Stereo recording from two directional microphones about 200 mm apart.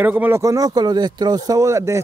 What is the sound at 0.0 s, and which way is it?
Speech, 10° right (ahead or behind).